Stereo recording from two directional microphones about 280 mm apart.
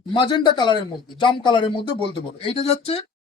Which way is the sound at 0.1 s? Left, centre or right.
Centre.